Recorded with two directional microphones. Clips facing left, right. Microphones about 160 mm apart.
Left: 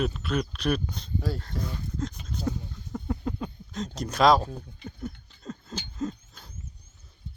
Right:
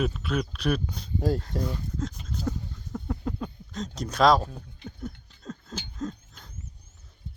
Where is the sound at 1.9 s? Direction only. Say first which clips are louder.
Even; 5° right (ahead or behind).